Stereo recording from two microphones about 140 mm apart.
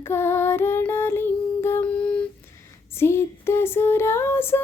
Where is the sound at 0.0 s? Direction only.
15° left (ahead or behind).